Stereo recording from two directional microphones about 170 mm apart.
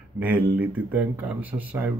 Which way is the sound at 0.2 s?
10° right (ahead or behind).